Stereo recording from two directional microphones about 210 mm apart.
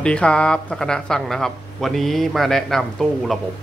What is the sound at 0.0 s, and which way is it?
Speech, 5° left (ahead or behind).